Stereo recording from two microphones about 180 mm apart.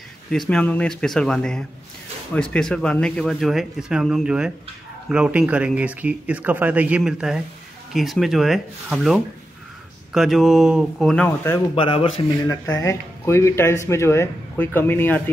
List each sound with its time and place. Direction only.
0.3 s speech: 5° left (ahead or behind)
11.7 s a man's voice: 30° left (ahead or behind)
12.4 s speech: 15° left (ahead or behind)